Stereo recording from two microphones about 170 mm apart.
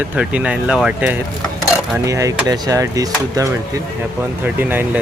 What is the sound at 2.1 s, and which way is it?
Speech, 20° right (ahead or behind).